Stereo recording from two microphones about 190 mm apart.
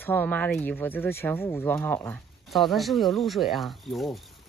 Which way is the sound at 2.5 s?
Centre (ahead or behind).